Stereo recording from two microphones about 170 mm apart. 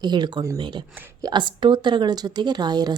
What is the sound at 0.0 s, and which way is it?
A woman's voice, 25° right (ahead or behind).